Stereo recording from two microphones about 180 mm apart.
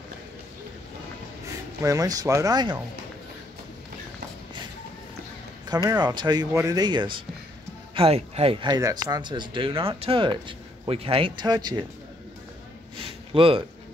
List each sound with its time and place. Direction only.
1.8 s speech: 20° right (ahead or behind)
5.9 s speech: 25° right (ahead or behind)
12.9 s a sound: 30° right (ahead or behind)